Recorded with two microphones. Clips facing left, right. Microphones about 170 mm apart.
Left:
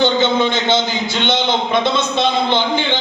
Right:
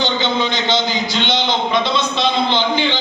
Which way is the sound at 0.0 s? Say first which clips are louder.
Left 4 dB; 50° left (ahead or behind).